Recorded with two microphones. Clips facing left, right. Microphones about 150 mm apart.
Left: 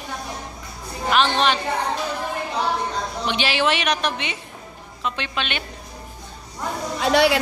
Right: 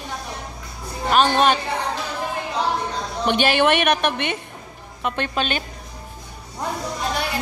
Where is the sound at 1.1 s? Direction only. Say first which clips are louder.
Right 3 dB; 45° right (ahead or behind).